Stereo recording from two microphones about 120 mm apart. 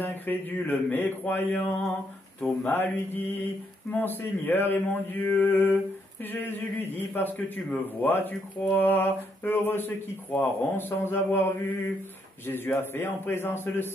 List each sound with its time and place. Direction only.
0.0 s a man's voice: 15° left (ahead or behind)
3.9 s a man's voice: 15° left (ahead or behind)